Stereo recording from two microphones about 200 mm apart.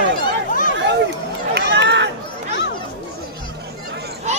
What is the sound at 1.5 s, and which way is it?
Run, 60° right (ahead or behind).